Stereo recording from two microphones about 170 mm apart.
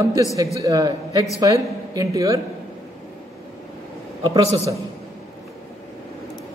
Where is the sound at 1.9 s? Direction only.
20° right (ahead or behind).